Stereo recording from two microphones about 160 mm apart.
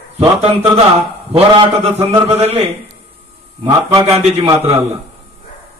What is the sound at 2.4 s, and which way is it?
Speech, 40° right (ahead or behind).